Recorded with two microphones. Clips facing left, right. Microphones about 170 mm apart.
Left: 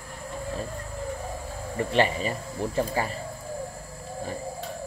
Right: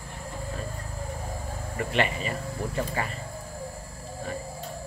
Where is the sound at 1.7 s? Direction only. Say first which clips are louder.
Left 4 dB; 35° left (ahead or behind).